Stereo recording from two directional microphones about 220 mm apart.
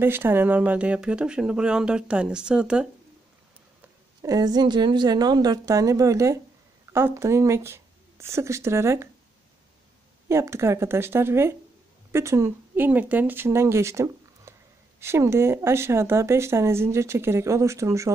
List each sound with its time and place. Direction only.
0.0 s speech: 10° right (ahead or behind)
4.2 s speech: 15° right (ahead or behind)
10.2 s speech: 15° right (ahead or behind)